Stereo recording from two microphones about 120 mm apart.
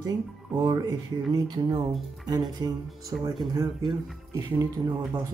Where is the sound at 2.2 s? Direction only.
35° right (ahead or behind).